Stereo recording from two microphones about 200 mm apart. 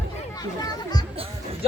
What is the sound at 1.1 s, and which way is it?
Music, 30° right (ahead or behind).